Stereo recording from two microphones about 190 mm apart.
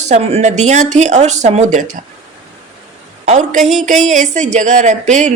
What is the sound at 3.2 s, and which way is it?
Speech, 40° right (ahead or behind).